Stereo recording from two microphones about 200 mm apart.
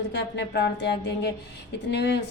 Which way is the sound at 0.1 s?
60° left (ahead or behind).